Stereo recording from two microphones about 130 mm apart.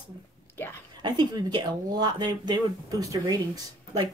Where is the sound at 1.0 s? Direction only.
35° right (ahead or behind).